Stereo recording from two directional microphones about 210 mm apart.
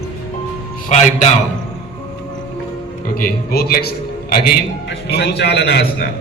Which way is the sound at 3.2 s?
45° left (ahead or behind).